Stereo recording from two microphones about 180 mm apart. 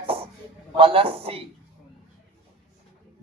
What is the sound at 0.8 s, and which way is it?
Speech, 30° right (ahead or behind).